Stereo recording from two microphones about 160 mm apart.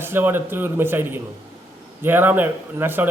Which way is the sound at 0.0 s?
15° right (ahead or behind).